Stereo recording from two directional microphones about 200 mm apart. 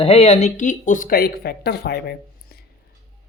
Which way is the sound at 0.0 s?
30° left (ahead or behind).